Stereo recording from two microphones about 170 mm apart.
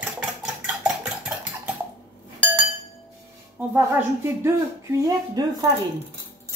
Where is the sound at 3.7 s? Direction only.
15° right (ahead or behind).